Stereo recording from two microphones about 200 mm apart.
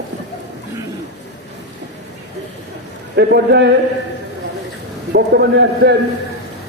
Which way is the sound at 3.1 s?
55° right (ahead or behind).